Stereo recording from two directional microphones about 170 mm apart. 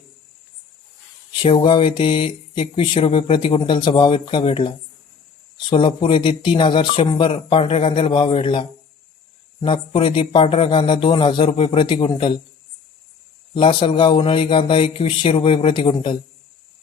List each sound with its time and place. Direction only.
1.3 s speech: 30° left (ahead or behind)
13.5 s speech: 30° left (ahead or behind)